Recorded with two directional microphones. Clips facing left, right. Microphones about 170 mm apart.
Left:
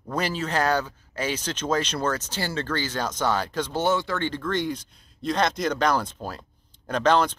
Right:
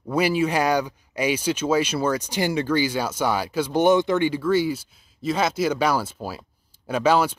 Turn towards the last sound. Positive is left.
turn(degrees=-10)  # may be behind; listen again after turning